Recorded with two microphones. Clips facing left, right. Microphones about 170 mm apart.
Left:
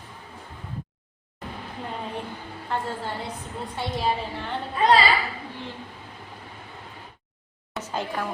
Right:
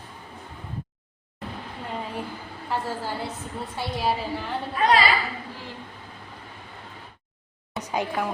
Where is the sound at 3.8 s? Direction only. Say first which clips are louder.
Even; centre (ahead or behind).